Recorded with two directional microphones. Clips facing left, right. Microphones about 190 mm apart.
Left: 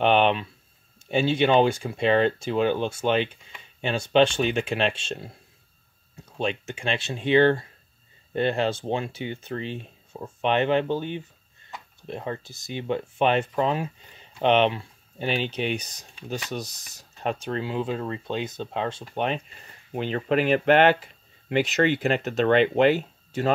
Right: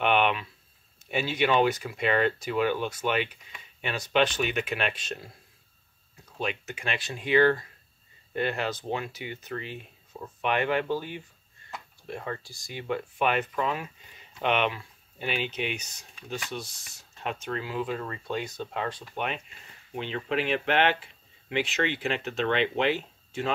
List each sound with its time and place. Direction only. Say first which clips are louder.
0.0 s speech: left 4 dB; 30° left (ahead or behind)
19.9 s speech: left 6 dB; 45° left (ahead or behind)